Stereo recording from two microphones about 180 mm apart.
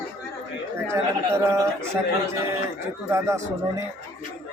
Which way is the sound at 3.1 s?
15° right (ahead or behind).